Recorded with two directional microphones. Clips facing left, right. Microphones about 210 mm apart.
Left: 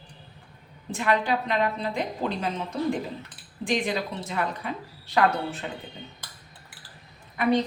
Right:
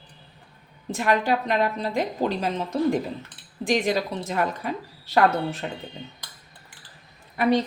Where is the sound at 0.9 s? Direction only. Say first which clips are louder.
Right 2 dB; 45° right (ahead or behind).